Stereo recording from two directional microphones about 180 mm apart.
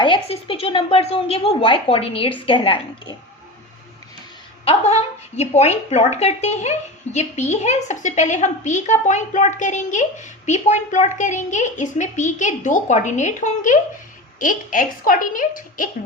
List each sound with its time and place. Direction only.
0.0 s a woman's voice: 30° left (ahead or behind)
4.6 s a woman's voice: 35° left (ahead or behind)